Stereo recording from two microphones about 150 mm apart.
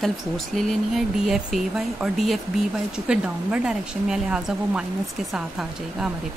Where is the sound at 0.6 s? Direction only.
Centre (ahead or behind).